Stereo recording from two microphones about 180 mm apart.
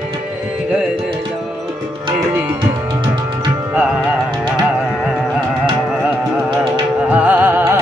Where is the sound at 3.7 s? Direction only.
10° right (ahead or behind).